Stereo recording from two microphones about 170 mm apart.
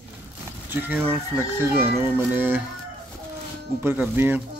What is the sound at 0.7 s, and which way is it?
Speech, 10° right (ahead or behind).